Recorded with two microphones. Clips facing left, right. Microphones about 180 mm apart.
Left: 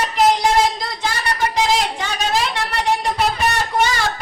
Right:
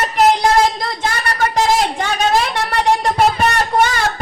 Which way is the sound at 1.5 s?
50° right (ahead or behind).